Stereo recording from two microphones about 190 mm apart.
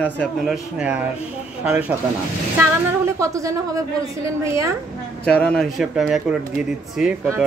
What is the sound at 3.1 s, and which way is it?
Speech, 15° right (ahead or behind).